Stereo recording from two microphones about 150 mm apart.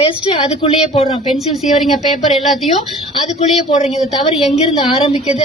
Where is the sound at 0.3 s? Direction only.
35° left (ahead or behind).